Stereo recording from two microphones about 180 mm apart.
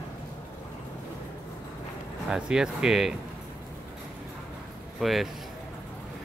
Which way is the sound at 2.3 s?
5° right (ahead or behind).